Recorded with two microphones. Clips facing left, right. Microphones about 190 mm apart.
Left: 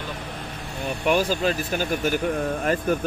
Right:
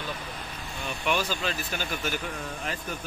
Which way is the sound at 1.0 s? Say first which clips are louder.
Left 8 dB; 45° left (ahead or behind).